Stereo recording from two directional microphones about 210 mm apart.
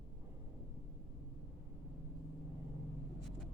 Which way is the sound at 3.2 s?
Centre (ahead or behind).